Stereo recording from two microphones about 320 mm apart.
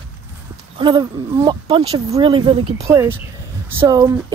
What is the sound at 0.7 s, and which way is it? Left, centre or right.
Speech, centre.